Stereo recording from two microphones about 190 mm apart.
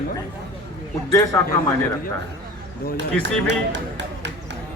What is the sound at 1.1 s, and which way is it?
Speech, 15° left (ahead or behind).